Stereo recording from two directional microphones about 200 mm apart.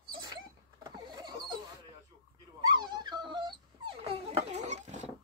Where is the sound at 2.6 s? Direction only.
20° right (ahead or behind); by 5.1 s 35° right (ahead or behind).